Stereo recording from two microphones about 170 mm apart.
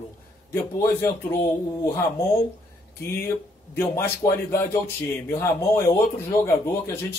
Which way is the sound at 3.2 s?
15° left (ahead or behind).